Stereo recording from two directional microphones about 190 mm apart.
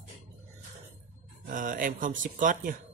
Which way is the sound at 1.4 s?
45° right (ahead or behind).